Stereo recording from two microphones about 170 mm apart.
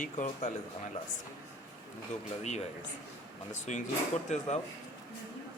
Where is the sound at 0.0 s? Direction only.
50° left (ahead or behind).